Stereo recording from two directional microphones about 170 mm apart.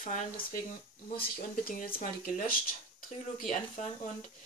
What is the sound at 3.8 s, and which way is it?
Speech, 45° left (ahead or behind).